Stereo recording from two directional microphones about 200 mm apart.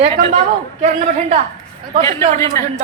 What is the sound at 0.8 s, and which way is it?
Speech, 35° right (ahead or behind).